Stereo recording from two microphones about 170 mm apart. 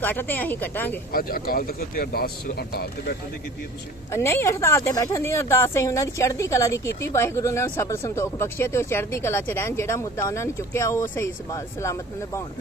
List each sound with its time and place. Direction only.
0.0 s a woman's voice: 10° left (ahead or behind)
1.1 s speech: 60° left (ahead or behind)
4.1 s a woman's voice: 15° left (ahead or behind)